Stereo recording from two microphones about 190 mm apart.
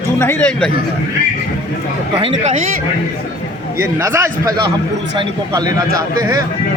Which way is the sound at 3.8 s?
15° right (ahead or behind).